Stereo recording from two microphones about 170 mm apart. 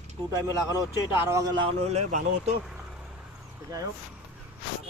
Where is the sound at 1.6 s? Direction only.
40° right (ahead or behind).